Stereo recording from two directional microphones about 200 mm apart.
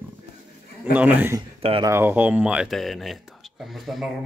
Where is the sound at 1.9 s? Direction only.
10° right (ahead or behind).